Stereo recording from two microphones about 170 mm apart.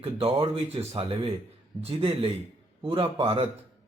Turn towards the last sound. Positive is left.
turn(degrees=-30)  # may be behind; listen again after turning